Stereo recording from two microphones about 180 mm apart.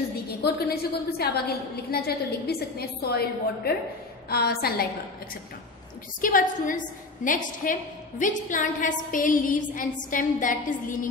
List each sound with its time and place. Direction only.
0.3 s a woman's voice: 60° left (ahead or behind)
6.2 s a woman's voice: 50° left (ahead or behind)